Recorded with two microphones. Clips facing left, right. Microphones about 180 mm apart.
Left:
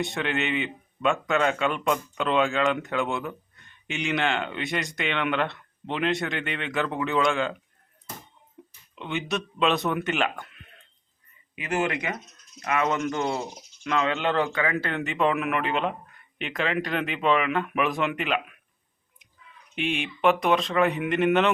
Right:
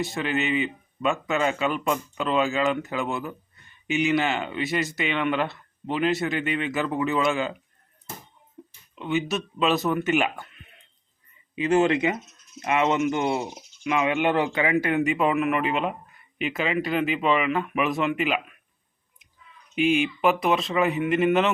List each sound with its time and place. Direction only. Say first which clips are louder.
0.0 s a man's voice: right 1 dB; centre (ahead or behind)
9.0 s a man's voice: right 4 dB; 5° right (ahead or behind)
11.5 s speech: right 7 dB; 25° right (ahead or behind)
13.5 s a man's voice: right 2 dB; 10° right (ahead or behind)
19.7 s a man's voice: right 7 dB; centre (ahead or behind)